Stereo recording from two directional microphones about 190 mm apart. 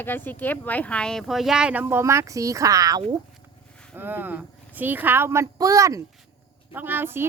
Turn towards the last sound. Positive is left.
turn(degrees=-10)  # may be behind; listen again after turning